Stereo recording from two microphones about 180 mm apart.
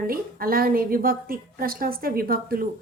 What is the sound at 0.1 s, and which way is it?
A woman's voice, 55° right (ahead or behind).